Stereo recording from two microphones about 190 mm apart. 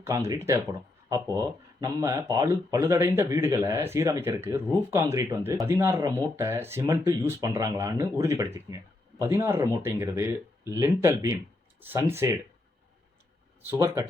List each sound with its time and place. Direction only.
0.0 s speech: 15° right (ahead or behind)
13.7 s speech: 15° right (ahead or behind)